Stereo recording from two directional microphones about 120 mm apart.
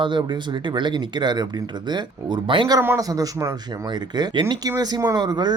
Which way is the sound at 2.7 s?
25° right (ahead or behind).